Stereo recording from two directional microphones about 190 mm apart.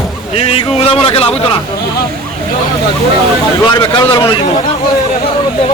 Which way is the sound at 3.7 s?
20° left (ahead or behind).